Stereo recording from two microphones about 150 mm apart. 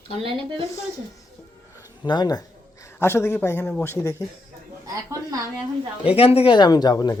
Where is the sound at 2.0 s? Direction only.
30° left (ahead or behind).